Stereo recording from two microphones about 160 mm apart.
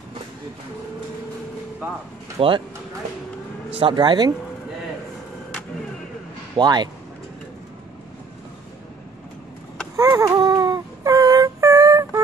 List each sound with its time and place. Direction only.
2.3 s speech: 35° right (ahead or behind)
3.7 s speech: 30° right (ahead or behind)
6.5 s speech: 25° right (ahead or behind)
9.9 s a sound: 20° right (ahead or behind)